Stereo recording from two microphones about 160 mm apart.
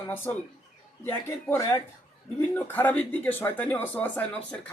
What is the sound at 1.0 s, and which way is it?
Speech, 15° left (ahead or behind).